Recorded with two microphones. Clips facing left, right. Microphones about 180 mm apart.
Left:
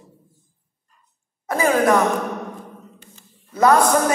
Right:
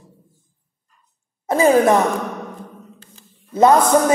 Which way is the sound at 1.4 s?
25° right (ahead or behind).